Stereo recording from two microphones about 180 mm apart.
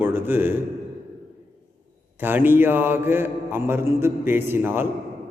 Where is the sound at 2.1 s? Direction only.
10° right (ahead or behind).